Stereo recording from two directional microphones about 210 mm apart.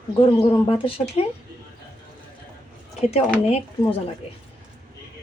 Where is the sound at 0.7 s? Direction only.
25° left (ahead or behind).